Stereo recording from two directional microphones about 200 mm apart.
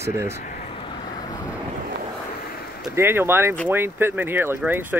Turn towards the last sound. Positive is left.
turn(degrees=-10)  # may be behind; listen again after turning